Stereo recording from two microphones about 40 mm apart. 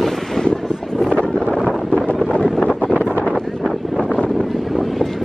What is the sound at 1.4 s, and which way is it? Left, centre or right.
Wind noise, centre.